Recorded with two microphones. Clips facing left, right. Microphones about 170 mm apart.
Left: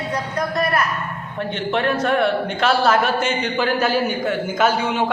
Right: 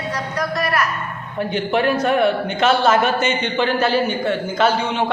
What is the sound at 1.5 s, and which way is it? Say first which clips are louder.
A man's voice: right 2 dB; 5° right (ahead or behind).